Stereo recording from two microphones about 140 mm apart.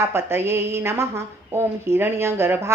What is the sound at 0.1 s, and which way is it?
A woman's voice, 15° right (ahead or behind).